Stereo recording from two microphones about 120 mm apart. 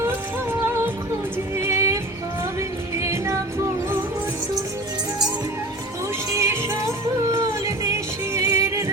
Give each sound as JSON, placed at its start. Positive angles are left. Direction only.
{"t": 1.5, "sound": "music", "side_deg": -20}
{"t": 6.3, "sound": "music", "side_deg": -25}